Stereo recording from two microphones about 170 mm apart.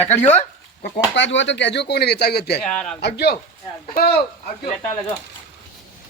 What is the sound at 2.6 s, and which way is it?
Speech, 5° left (ahead or behind).